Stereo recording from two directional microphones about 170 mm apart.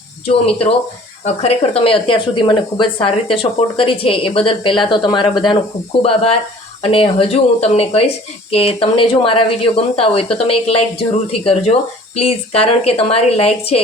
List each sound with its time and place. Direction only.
0.3 s speech: 35° left (ahead or behind)